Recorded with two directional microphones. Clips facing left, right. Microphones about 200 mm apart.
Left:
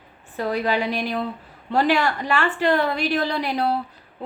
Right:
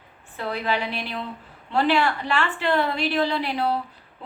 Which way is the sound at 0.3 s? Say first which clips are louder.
Left 4 dB; 45° left (ahead or behind).